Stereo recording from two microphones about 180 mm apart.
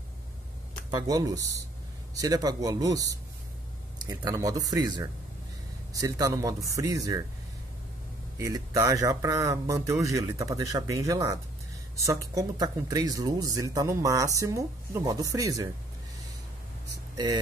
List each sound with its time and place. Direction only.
0.8 s speech: 20° right (ahead or behind)
8.4 s speech: 20° right (ahead or behind)